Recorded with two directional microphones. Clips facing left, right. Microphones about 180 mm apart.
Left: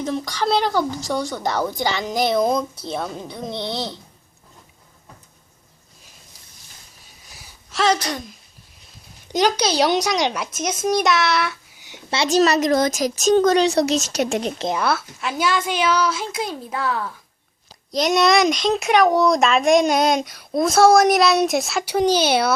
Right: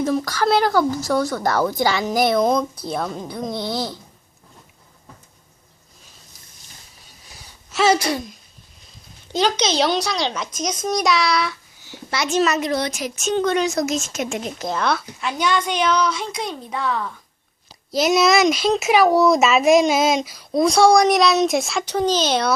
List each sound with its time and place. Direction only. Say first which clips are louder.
0.0 s speech: right 3 dB; 5° right (ahead or behind)
7.7 s a woman's voice: right 2 dB; 5° right (ahead or behind)
9.3 s speech: left 1 dB; 15° left (ahead or behind)
11.8 s a sound: left 1 dB; 20° left (ahead or behind)
12.2 s speech: left 3 dB; 35° left (ahead or behind)
13.9 s a woman's voice: left 3 dB; 70° left (ahead or behind)
14.2 s speech: left 4 dB; 35° left (ahead or behind)
14.7 s speech: right 2 dB; 5° left (ahead or behind)